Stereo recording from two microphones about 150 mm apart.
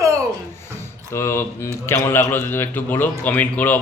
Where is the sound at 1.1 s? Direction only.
20° left (ahead or behind).